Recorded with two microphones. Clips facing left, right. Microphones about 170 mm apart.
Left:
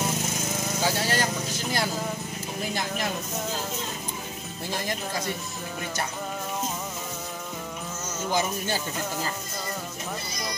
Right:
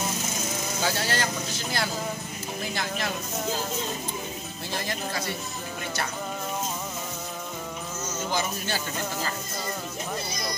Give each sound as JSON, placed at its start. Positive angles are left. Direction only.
{"t": 0.8, "sound": "speech", "side_deg": 15}
{"t": 8.3, "sound": "a man's voice", "side_deg": 15}